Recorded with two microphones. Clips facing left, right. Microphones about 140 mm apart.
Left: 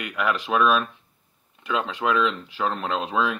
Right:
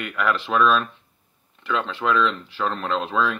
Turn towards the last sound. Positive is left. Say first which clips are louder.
# right 1 dB
turn(degrees=15)  # may be behind; listen again after turning